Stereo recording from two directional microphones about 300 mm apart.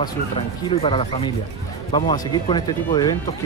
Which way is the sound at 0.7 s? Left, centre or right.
Centre.